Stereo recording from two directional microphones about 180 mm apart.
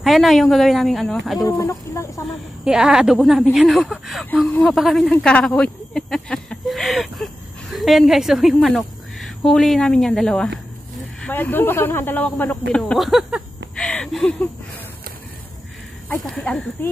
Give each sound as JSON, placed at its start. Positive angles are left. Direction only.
{"t": 0.0, "sound": "a woman's voice", "side_deg": 0}
{"t": 1.4, "sound": "chicken", "side_deg": 15}
{"t": 2.6, "sound": "a woman's voice", "side_deg": -5}
{"t": 16.1, "sound": "speech", "side_deg": 5}